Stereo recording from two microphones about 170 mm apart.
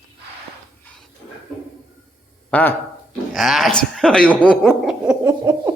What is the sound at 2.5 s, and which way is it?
Speech, 10° left (ahead or behind).